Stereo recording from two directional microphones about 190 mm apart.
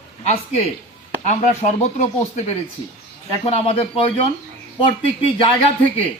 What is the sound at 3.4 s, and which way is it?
Speech, 30° left (ahead or behind).